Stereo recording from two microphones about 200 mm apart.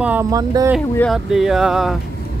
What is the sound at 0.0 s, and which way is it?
Speech, 10° right (ahead or behind).